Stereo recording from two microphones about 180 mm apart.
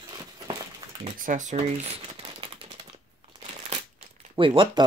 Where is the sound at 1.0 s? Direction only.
45° right (ahead or behind).